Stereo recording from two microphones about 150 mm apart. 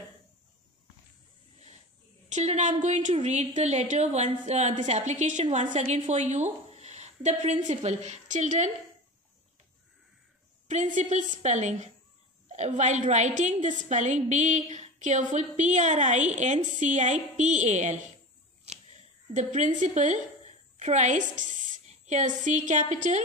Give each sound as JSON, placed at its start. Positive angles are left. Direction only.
{"t": 2.2, "sound": "a woman's voice", "side_deg": -50}
{"t": 10.7, "sound": "a woman's voice", "side_deg": -55}
{"t": 19.3, "sound": "a woman's voice", "side_deg": -55}